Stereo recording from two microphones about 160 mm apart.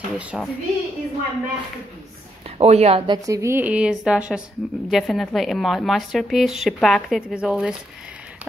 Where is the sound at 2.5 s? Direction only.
40° right (ahead or behind); by 7.7 s 5° right (ahead or behind).